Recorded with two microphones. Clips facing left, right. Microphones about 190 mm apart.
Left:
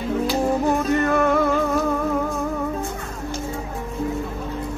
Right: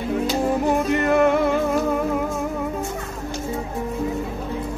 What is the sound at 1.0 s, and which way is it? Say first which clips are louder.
Music: right 6 dB; 20° right (ahead or behind).